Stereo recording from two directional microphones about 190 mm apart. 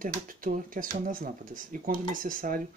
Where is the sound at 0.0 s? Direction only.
45° right (ahead or behind).